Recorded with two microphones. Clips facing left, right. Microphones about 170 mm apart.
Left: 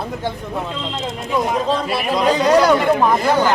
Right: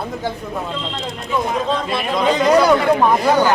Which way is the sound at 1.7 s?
5° left (ahead or behind).